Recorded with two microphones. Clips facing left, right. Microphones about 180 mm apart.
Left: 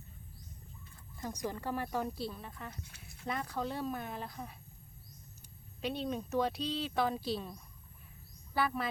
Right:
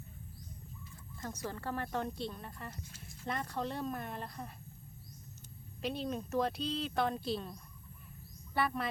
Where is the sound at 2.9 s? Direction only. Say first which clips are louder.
Right 3 dB; 60° left (ahead or behind).